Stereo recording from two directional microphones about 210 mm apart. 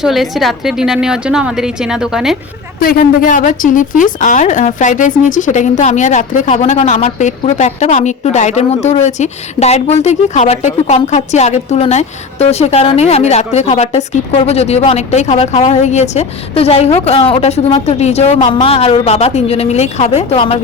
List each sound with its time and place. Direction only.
0.0 s a woman's voice: centre (ahead or behind)
2.8 s a woman's voice: 45° left (ahead or behind); by 20.6 s 25° left (ahead or behind)